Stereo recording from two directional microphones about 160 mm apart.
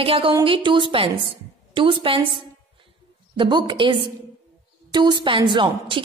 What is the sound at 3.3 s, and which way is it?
A woman's voice, 30° right (ahead or behind).